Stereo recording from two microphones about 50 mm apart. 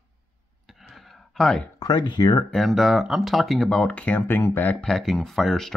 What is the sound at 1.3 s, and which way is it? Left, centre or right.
Speech, centre.